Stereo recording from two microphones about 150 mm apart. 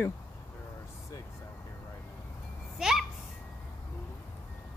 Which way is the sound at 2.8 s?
Centre (ahead or behind).